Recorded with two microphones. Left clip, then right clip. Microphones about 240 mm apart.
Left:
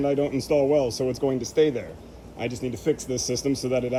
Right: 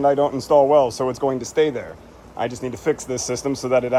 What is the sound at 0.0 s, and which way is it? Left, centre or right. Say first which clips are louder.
Speech: right 7 dB; right.